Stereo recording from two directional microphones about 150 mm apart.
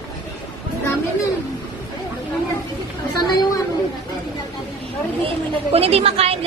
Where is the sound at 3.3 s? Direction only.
25° left (ahead or behind).